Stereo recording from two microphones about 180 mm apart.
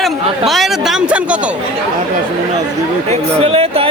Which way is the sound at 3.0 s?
35° right (ahead or behind).